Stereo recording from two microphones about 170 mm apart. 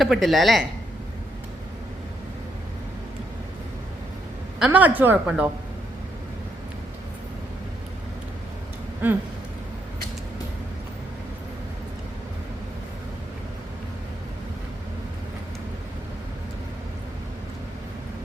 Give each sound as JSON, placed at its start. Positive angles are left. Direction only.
{"t": 0.0, "sound": "a woman's voice", "side_deg": 0}
{"t": 4.6, "sound": "a woman's voice", "side_deg": -10}
{"t": 9.0, "sound": "a woman's voice", "side_deg": -10}